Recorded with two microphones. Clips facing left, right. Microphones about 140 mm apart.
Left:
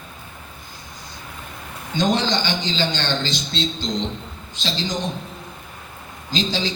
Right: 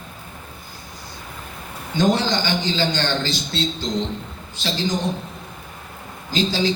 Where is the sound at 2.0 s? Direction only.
20° left (ahead or behind).